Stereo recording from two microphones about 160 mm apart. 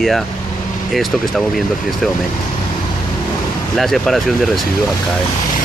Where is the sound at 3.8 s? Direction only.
Centre (ahead or behind).